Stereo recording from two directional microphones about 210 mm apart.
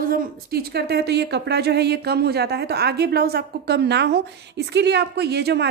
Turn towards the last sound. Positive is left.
turn(degrees=-50)  # may be behind; listen again after turning